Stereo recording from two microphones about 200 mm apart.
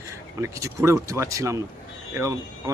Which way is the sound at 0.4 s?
15° right (ahead or behind).